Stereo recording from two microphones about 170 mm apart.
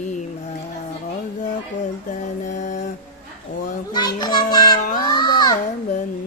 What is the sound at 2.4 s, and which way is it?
Mantra, 50° left (ahead or behind).